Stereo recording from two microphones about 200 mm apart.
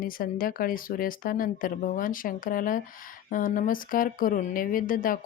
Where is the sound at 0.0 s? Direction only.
45° left (ahead or behind).